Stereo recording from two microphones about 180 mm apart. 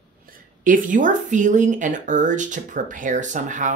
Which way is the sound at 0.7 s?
45° right (ahead or behind).